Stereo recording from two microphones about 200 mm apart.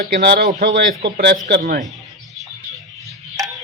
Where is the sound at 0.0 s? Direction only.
50° right (ahead or behind).